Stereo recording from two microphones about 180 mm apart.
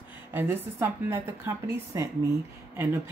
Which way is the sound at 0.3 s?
10° right (ahead or behind).